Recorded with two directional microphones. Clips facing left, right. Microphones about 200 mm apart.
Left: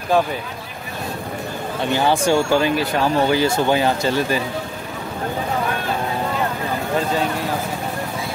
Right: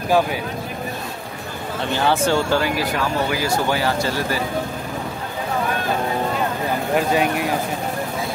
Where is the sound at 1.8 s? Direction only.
15° left (ahead or behind).